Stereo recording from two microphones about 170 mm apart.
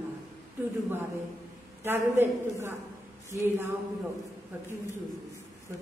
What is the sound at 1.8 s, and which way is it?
A woman's voice, 15° right (ahead or behind).